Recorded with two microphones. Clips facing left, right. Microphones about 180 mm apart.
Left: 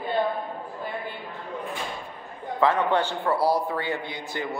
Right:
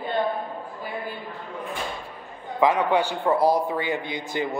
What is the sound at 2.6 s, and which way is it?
A man's voice, 10° right (ahead or behind).